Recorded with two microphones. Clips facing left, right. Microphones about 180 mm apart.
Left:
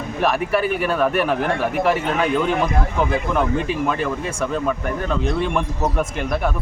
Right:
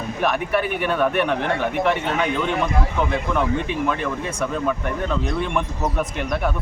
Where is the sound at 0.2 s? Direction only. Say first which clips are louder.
Left 2 dB; centre (ahead or behind).